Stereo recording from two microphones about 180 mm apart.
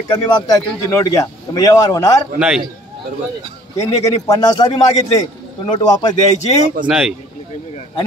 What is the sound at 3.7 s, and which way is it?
A man's voice, 20° left (ahead or behind).